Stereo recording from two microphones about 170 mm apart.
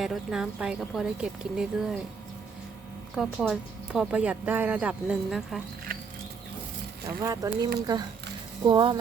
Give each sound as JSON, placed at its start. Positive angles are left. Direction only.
{"t": 0.0, "sound": "speech", "side_deg": -5}
{"t": 3.2, "sound": "speech", "side_deg": -5}
{"t": 7.2, "sound": "speech", "side_deg": -20}